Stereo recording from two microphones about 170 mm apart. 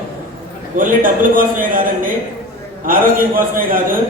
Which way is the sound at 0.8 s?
55° right (ahead or behind).